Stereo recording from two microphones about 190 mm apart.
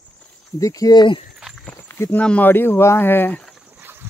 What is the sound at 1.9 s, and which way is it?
Speech, 10° left (ahead or behind).